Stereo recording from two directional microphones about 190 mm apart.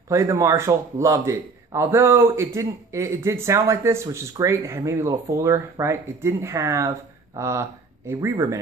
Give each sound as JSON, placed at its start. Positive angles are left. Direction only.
{"t": 0.1, "sound": "a man's voice", "side_deg": -15}